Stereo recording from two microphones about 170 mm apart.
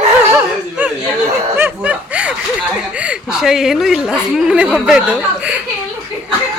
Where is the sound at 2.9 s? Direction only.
5° right (ahead or behind).